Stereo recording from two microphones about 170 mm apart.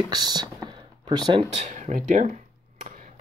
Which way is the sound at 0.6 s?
25° right (ahead or behind).